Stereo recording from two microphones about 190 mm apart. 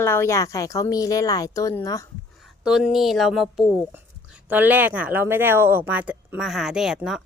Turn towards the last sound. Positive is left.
turn(degrees=-5)  # may be behind; listen again after turning